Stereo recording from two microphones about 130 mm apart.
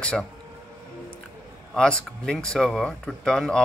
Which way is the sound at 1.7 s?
5° left (ahead or behind).